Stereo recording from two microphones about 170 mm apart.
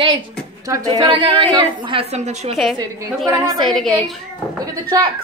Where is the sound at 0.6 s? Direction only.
20° right (ahead or behind); by 2.6 s 40° right (ahead or behind).